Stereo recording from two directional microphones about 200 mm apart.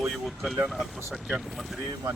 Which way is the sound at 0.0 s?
Centre (ahead or behind).